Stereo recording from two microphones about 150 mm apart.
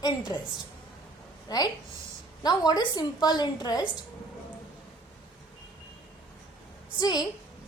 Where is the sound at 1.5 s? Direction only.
25° left (ahead or behind).